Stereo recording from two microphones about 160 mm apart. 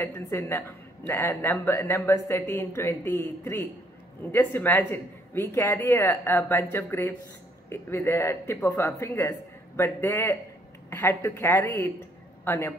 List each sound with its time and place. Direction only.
0.0 s a woman's voice: 20° left (ahead or behind)